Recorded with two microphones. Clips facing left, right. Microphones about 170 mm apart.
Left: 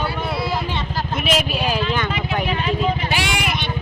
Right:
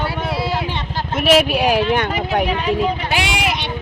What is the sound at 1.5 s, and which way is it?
Speech, 65° right (ahead or behind).